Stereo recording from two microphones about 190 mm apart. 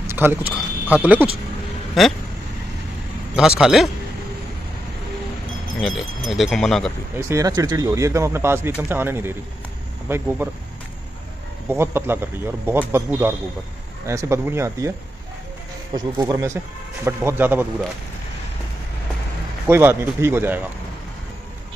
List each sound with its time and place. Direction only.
0.0 s speech: 10° right (ahead or behind)
3.3 s speech: 5° right (ahead or behind)
5.8 s speech: centre (ahead or behind)
7.2 s speech: 15° right (ahead or behind)
11.7 s speech: 10° right (ahead or behind)
19.7 s speech: 10° right (ahead or behind)